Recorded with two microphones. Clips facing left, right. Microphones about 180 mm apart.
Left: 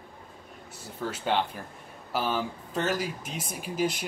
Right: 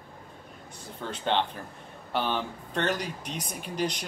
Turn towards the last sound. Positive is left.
turn(degrees=5)  # may be behind; listen again after turning